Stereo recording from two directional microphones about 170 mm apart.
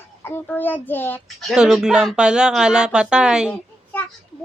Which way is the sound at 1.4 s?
5° right (ahead or behind).